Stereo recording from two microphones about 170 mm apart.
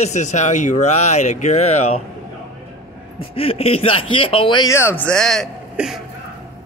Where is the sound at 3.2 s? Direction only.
35° left (ahead or behind).